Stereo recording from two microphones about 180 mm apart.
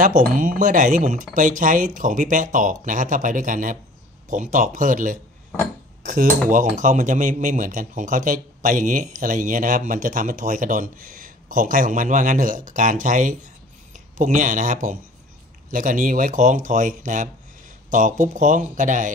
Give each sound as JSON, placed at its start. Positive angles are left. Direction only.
{"t": 0.0, "sound": "speech", "side_deg": -45}